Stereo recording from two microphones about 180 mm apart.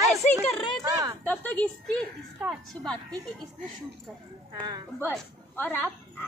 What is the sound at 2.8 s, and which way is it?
Speech, 5° left (ahead or behind).